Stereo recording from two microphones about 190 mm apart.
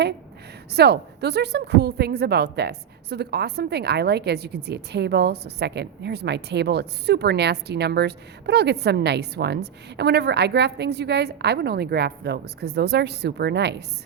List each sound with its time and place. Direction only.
0.7 s a woman's voice: 60° right (ahead or behind)